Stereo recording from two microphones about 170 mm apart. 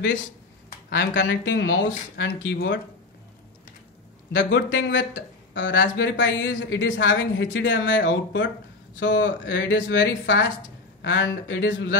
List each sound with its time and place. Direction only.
0.8 s speech: 90° left
4.3 s speech: 90° left